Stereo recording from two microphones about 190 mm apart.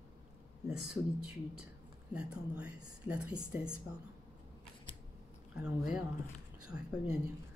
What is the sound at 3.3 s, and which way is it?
Speech, 20° right (ahead or behind).